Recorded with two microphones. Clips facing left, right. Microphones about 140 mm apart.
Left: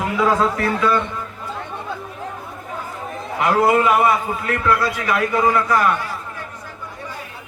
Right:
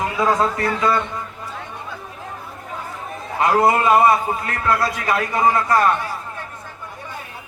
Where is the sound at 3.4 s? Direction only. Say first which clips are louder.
Even; 25° right (ahead or behind).